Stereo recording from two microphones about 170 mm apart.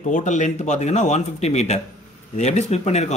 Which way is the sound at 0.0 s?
45° left (ahead or behind).